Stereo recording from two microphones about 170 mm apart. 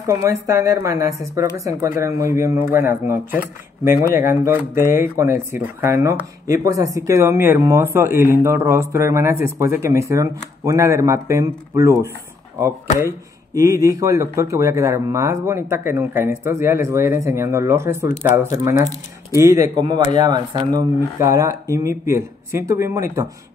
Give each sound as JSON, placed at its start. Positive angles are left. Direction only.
{"t": 0.0, "sound": "speech", "side_deg": -15}
{"t": 13.6, "sound": "speech", "side_deg": -20}